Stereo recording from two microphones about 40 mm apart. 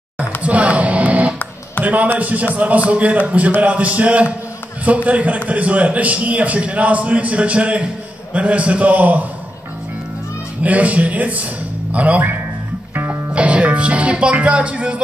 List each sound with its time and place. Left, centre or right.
0.4 s music: right
1.9 s a man's voice: right
10.6 s a man's voice: right
12.9 s music: right
13.3 s a man's voice: right